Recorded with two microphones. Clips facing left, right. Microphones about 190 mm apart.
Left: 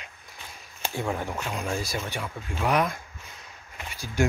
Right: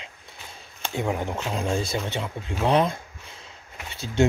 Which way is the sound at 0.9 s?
20° right (ahead or behind).